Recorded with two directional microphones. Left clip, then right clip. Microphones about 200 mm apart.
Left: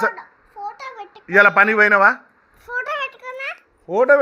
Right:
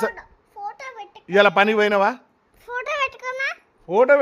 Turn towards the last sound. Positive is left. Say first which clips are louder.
# left 1 dB
turn(degrees=-15)  # may be behind; listen again after turning